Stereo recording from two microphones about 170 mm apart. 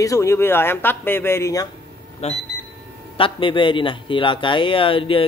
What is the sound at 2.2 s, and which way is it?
A man's voice, 40° left (ahead or behind).